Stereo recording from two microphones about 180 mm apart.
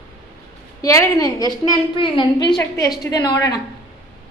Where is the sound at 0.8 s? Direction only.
20° left (ahead or behind).